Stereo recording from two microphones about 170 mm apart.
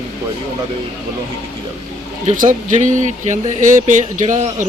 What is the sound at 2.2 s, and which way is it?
Speech, 50° right (ahead or behind).